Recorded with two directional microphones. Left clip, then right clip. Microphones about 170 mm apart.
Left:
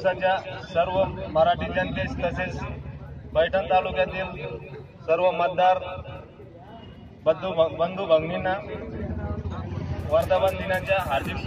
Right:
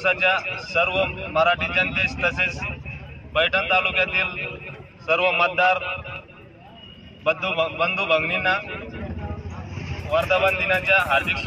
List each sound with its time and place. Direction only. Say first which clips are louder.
0.0 s a man's voice: right 3 dB; 10° left (ahead or behind)
7.2 s a man's voice: even; 10° left (ahead or behind)
10.1 s speech: right 1 dB; centre (ahead or behind)
10.5 s a man's voice: right 6 dB; 15° left (ahead or behind)